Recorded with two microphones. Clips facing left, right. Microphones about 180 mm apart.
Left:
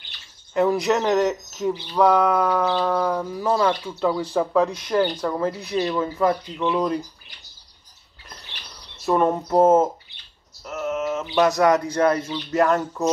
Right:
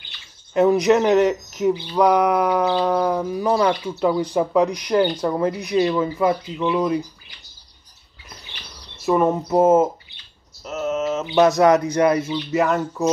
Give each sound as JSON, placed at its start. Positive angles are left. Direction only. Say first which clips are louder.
{"t": 0.6, "sound": "speech", "louder": "right 4 dB", "side_deg": -20}
{"t": 9.0, "sound": "speech", "louder": "right 2 dB", "side_deg": -5}
{"t": 10.6, "sound": "speech", "louder": "right 3 dB", "side_deg": -20}